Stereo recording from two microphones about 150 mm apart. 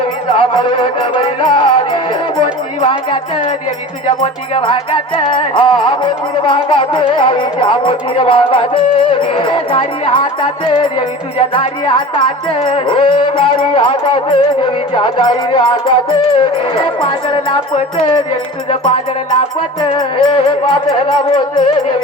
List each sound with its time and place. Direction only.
0.3 s music: 35° left (ahead or behind)
4.2 s music: 35° left (ahead or behind)
19.8 s music: 35° left (ahead or behind)